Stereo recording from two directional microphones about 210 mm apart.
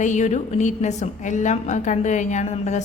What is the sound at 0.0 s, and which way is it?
A woman's voice, 35° left (ahead or behind).